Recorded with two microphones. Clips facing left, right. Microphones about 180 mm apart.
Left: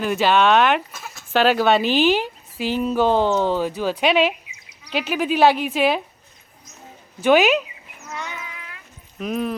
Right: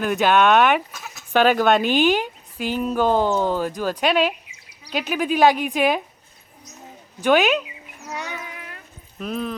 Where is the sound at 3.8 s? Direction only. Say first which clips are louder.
Left 2 dB; 10° left (ahead or behind).